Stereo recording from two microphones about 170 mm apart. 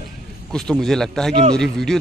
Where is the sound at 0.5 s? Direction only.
5° left (ahead or behind).